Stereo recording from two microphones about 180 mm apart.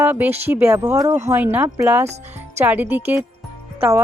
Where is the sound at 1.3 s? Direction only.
10° right (ahead or behind).